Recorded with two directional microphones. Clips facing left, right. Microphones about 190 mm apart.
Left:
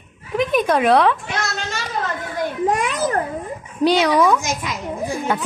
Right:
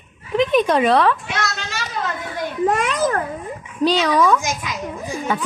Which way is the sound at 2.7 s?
20° left (ahead or behind).